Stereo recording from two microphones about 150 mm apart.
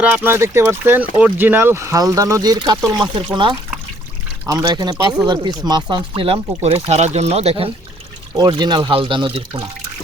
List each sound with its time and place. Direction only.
0.0 s speech: 10° right (ahead or behind); by 7.7 s 40° right (ahead or behind)
8.4 s speech: 30° right (ahead or behind)